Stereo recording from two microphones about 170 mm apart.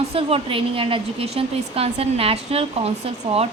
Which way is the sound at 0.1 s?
35° right (ahead or behind).